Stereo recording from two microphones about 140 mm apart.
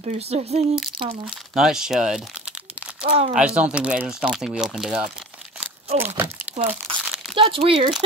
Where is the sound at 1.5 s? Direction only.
5° right (ahead or behind).